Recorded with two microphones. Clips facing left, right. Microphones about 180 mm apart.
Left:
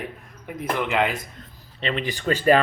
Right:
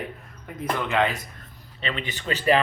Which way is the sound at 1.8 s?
35° left (ahead or behind).